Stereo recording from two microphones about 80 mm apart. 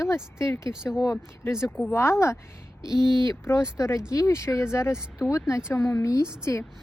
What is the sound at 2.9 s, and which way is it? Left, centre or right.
Speech, right.